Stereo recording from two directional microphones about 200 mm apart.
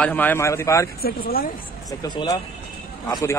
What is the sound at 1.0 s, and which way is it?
Speech, 50° left (ahead or behind).